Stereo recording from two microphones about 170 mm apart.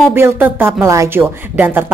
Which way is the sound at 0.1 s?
15° right (ahead or behind).